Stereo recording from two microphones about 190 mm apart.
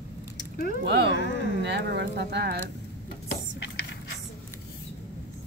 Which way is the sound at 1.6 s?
65° right (ahead or behind).